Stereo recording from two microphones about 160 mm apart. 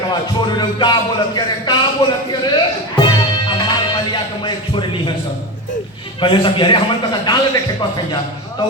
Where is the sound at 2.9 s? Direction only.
30° left (ahead or behind).